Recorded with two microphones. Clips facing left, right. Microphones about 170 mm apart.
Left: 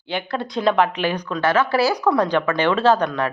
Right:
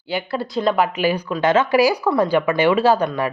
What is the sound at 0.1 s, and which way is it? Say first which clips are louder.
Speech: right 2 dB; 5° right (ahead or behind).